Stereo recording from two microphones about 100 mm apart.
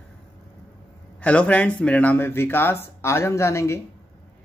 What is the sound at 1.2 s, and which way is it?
Speech, 15° left (ahead or behind).